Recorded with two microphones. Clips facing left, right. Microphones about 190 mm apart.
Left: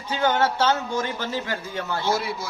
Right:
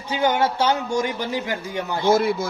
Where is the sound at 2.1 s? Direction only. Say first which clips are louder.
Right 8 dB; 50° right (ahead or behind).